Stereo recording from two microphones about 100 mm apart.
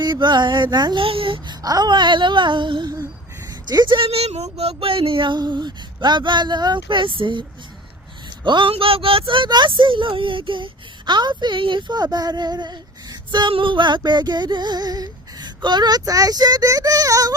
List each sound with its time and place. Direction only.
0.0 s speech: 50° right (ahead or behind)
1.0 s a child's voice: 60° right (ahead or behind)
1.6 s speech: 40° right (ahead or behind); by 7.4 s 55° right (ahead or behind)
8.4 s speech: 50° right (ahead or behind)
8.7 s speech: 70° right (ahead or behind); by 17.3 s 35° right (ahead or behind)